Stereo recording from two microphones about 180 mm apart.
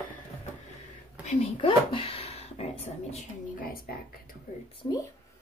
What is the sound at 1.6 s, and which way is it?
Speech, 30° left (ahead or behind).